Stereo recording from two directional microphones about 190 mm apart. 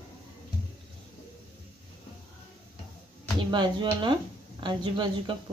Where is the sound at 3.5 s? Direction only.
25° right (ahead or behind).